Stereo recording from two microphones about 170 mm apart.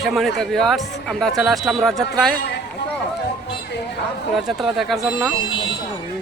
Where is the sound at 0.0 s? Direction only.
Centre (ahead or behind).